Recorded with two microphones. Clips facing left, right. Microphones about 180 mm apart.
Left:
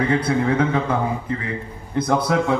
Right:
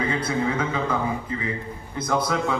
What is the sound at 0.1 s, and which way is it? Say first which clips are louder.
A man's voice: left 5 dB; 60° left (ahead or behind).